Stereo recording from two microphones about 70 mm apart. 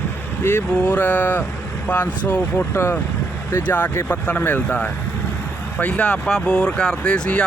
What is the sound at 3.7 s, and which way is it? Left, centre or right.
Speech, left.